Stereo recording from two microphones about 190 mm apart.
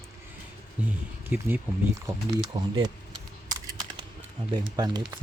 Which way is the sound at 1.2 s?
10° right (ahead or behind).